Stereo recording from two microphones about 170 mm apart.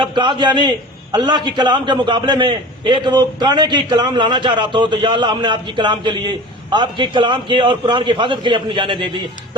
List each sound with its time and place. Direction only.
0.0 s a man's voice: 30° right (ahead or behind)